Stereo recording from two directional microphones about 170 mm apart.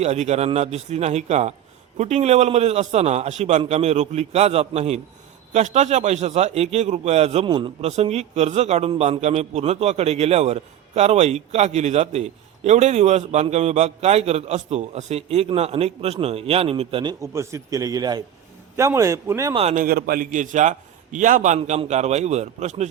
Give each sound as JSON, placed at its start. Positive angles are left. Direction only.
{"t": 0.0, "sound": "a man's voice", "side_deg": -40}
{"t": 19.7, "sound": "a man's voice", "side_deg": -55}
{"t": 21.6, "sound": "a man's voice", "side_deg": -35}